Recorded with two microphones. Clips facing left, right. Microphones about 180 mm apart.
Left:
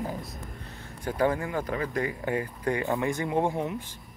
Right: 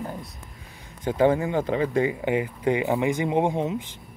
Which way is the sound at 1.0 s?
25° right (ahead or behind).